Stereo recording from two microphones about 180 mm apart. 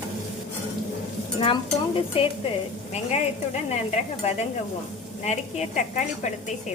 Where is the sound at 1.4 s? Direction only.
30° left (ahead or behind).